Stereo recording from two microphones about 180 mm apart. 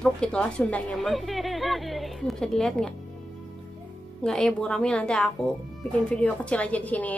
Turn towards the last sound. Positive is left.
turn(degrees=10)  # may be behind; listen again after turning